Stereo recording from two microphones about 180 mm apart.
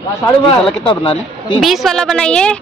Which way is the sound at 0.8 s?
25° left (ahead or behind).